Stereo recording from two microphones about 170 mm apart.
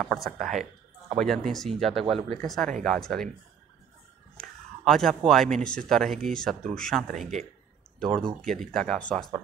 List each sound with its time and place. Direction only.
0.0 s speech: centre (ahead or behind)
0.5 s a sound: 45° right (ahead or behind)
1.1 s speech: centre (ahead or behind)
4.4 s speech: centre (ahead or behind)